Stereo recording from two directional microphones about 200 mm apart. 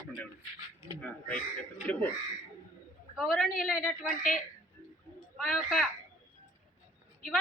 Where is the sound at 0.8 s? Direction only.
15° right (ahead or behind).